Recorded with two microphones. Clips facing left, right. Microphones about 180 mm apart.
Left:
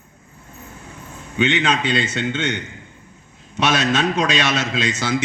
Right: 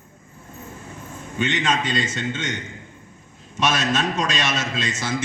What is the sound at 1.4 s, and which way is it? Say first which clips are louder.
A man's voice: left 4 dB; 70° left (ahead or behind).